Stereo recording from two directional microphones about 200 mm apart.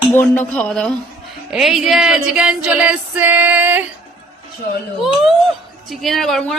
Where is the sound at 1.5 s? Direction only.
Centre (ahead or behind).